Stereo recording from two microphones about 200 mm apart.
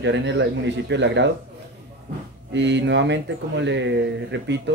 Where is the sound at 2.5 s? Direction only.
60° right (ahead or behind).